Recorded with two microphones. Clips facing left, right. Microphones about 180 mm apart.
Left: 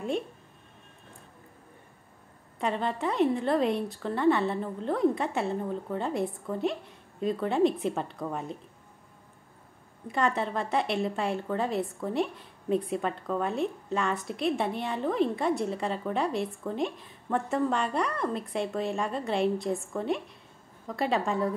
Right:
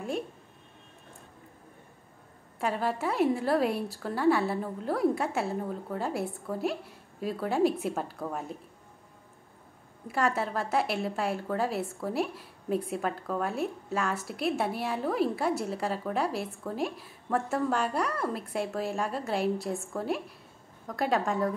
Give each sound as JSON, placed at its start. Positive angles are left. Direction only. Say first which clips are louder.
{"t": 2.6, "sound": "a woman's voice", "louder": "even", "side_deg": -5}
{"t": 10.0, "sound": "a woman's voice", "louder": "left 1 dB", "side_deg": -5}